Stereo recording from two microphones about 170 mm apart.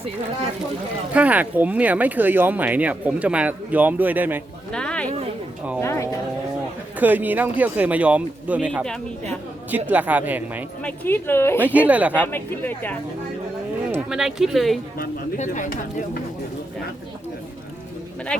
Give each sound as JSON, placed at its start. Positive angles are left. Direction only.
{"t": 1.1, "sound": "speech", "side_deg": -10}
{"t": 4.7, "sound": "a sound", "side_deg": 5}
{"t": 5.8, "sound": "speech", "side_deg": 15}
{"t": 7.0, "sound": "speech", "side_deg": -10}
{"t": 10.8, "sound": "speech", "side_deg": 10}
{"t": 11.9, "sound": "speech", "side_deg": -10}
{"t": 12.1, "sound": "speech", "side_deg": 10}
{"t": 14.1, "sound": "speech", "side_deg": -5}
{"t": 15.4, "sound": "speech", "side_deg": 50}